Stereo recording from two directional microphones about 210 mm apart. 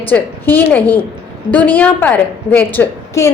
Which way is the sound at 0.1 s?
10° left (ahead or behind).